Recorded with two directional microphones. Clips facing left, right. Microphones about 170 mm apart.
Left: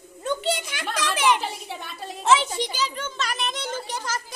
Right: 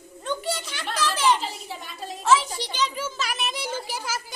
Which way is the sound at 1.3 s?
60° left (ahead or behind).